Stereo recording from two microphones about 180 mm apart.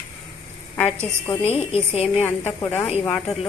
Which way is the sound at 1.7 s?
35° left (ahead or behind).